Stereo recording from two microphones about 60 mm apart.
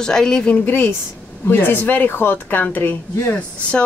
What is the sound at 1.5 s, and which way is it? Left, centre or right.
Speech, left.